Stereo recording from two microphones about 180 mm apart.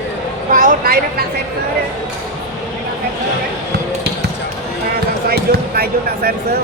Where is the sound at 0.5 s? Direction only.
50° right (ahead or behind).